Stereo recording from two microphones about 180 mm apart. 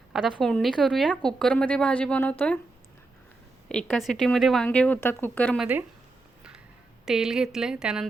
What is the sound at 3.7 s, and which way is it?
Speech, 5° left (ahead or behind).